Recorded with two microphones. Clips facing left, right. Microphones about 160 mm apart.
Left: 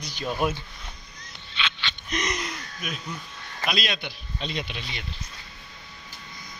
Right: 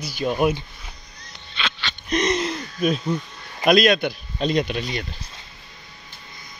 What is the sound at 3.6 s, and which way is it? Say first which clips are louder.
Speech: right 13 dB; 50° right (ahead or behind).